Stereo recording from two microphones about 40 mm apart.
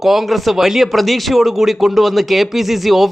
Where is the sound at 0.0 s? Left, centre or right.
Centre.